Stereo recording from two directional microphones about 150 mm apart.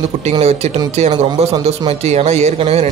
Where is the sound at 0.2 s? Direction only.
45° right (ahead or behind).